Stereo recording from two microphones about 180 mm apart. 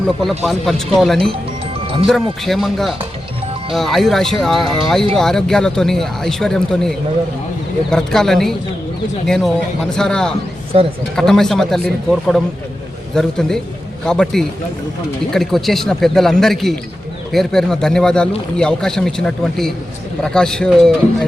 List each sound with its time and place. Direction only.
0.2 s a man's voice: centre (ahead or behind)
10.7 s a woman's voice: 35° right (ahead or behind)
11.1 s a man's voice: centre (ahead or behind)